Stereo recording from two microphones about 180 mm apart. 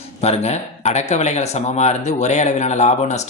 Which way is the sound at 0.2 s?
35° left (ahead or behind).